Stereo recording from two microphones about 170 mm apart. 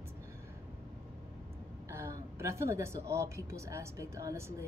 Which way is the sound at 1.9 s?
15° right (ahead or behind).